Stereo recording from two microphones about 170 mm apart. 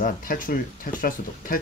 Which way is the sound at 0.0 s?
55° left (ahead or behind).